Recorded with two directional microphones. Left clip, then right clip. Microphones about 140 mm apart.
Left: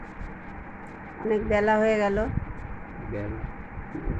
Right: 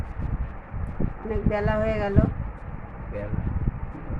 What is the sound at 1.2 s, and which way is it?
Speech, 20° left (ahead or behind).